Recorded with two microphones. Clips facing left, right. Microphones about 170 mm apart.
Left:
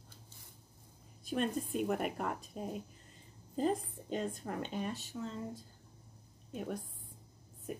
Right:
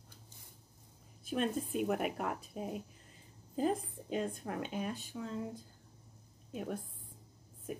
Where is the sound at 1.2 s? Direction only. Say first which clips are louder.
Even; centre (ahead or behind).